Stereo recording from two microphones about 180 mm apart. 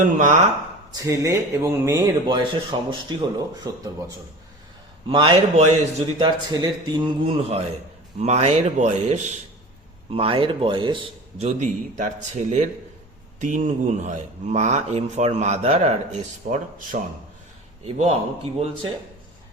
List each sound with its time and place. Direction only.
0.0 s speech: 45° right (ahead or behind)
1.0 s speech: 15° right (ahead or behind)
5.0 s speech: 25° right (ahead or behind)